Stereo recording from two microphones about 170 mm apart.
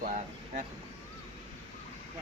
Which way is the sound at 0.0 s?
50° right (ahead or behind).